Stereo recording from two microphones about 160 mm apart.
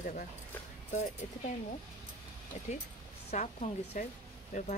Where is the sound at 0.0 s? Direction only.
55° left (ahead or behind).